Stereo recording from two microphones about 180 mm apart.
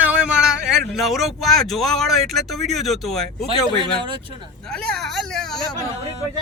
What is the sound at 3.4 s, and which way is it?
Speech, 30° right (ahead or behind).